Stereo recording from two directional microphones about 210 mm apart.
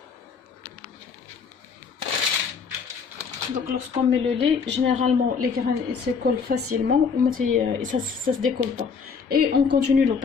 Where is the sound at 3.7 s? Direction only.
35° right (ahead or behind).